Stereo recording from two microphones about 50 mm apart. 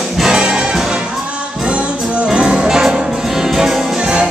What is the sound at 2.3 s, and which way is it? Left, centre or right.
Music, centre.